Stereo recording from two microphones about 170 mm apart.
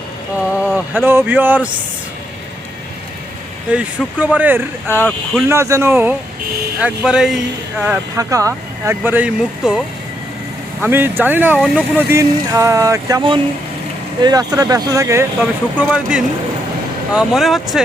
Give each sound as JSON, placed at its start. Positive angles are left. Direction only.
{"t": 0.5, "sound": "speech", "side_deg": -5}
{"t": 3.7, "sound": "speech", "side_deg": -10}
{"t": 4.9, "sound": "speech", "side_deg": 10}
{"t": 5.5, "sound": "speech", "side_deg": -15}
{"t": 8.1, "sound": "speech", "side_deg": -20}
{"t": 15.4, "sound": "speech", "side_deg": -5}